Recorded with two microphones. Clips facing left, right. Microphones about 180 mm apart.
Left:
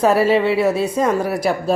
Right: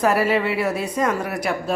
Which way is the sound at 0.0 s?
30° left (ahead or behind).